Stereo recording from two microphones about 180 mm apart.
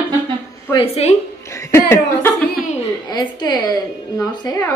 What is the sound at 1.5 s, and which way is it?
Speech, 15° left (ahead or behind).